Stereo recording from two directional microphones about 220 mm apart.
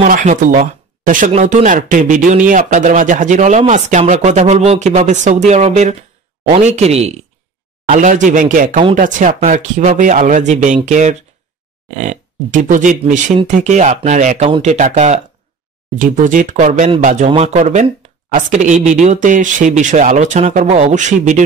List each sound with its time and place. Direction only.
0.0 s speech: 35° right (ahead or behind)